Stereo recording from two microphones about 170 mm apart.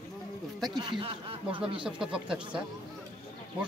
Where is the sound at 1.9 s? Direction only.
5° right (ahead or behind).